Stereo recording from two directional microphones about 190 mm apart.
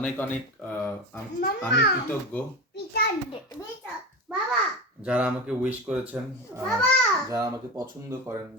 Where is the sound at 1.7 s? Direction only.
65° left (ahead or behind).